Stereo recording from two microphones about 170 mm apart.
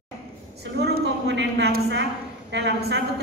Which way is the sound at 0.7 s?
75° right (ahead or behind).